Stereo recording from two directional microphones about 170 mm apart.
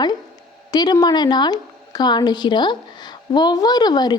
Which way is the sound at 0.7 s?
25° left (ahead or behind).